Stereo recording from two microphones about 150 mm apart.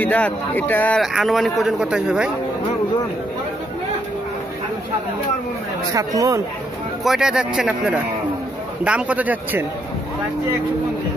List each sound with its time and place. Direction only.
0.0 s speech: 10° left (ahead or behind)
1.0 s a man's voice: centre (ahead or behind)
5.9 s speech: 25° right (ahead or behind)
7.1 s a man's voice: 5° right (ahead or behind)